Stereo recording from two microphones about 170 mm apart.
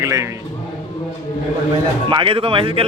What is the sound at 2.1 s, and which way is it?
Speech, 30° right (ahead or behind).